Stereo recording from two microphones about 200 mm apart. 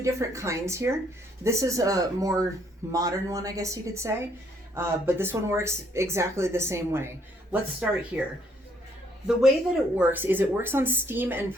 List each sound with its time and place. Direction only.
0.0 s speech: 15° right (ahead or behind)
10.0 s speech: 10° right (ahead or behind)